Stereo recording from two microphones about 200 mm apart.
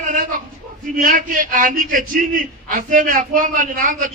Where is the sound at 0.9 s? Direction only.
45° right (ahead or behind).